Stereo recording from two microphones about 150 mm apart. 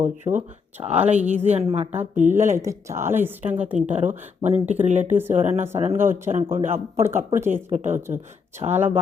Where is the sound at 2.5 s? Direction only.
20° right (ahead or behind).